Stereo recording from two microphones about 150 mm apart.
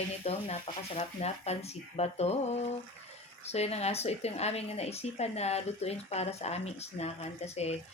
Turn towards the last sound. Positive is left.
turn(degrees=45)  # may be behind; listen again after turning